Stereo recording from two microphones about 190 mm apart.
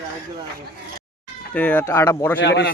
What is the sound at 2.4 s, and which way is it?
Speech, 65° left (ahead or behind).